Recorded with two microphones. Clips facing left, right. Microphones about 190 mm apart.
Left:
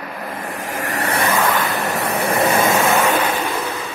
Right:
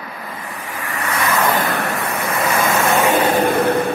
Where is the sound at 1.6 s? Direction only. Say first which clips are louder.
Even; 70° right (ahead or behind).